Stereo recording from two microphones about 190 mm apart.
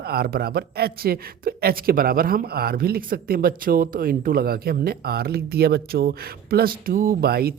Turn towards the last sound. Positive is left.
turn(degrees=-55)  # may be behind; listen again after turning